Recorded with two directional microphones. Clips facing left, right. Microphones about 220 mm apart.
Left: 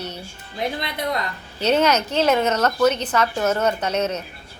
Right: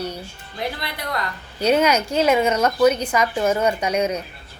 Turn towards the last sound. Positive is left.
turn(degrees=-10)  # may be behind; listen again after turning